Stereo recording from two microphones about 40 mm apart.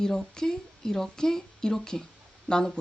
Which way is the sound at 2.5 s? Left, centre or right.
Left.